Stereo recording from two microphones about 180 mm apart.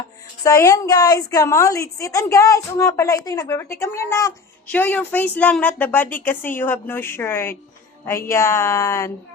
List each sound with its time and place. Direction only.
0.4 s a woman's voice: 20° left (ahead or behind)